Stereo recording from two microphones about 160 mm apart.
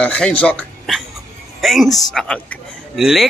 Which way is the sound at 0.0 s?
5° left (ahead or behind).